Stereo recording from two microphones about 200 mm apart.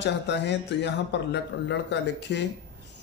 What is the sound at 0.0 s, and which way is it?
Speech, 60° left (ahead or behind).